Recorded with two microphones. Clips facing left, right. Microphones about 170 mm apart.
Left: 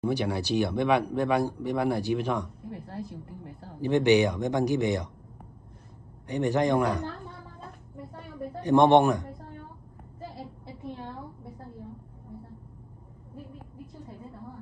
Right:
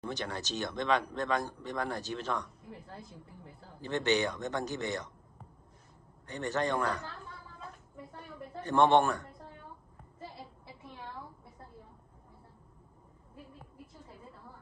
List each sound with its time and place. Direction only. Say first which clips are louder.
0.0 s speech: left 10 dB; 10° left (ahead or behind)
2.7 s a woman's voice: left 10 dB; 65° left (ahead or behind)
3.8 s speech: left 9 dB; 15° left (ahead or behind)
6.2 s speech: left 8 dB; 15° left (ahead or behind)
8.5 s speech: left 6 dB; 15° left (ahead or behind)